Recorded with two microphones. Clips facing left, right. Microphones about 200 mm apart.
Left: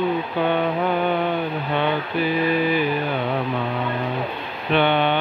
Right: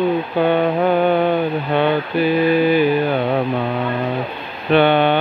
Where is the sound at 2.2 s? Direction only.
80° right.